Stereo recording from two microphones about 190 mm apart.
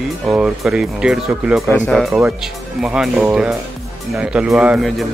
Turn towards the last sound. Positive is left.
turn(degrees=0)  # may be behind; listen again after turning